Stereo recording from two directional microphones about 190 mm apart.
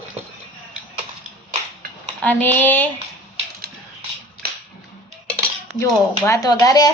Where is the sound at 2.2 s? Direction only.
10° left (ahead or behind).